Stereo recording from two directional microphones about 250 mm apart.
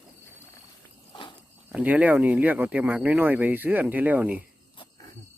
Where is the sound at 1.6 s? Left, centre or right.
Centre.